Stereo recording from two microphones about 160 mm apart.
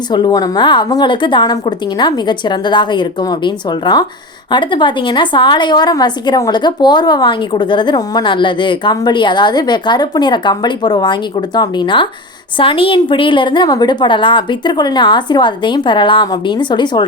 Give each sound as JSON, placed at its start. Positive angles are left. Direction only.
{"t": 0.1, "sound": "a woman's voice", "side_deg": 25}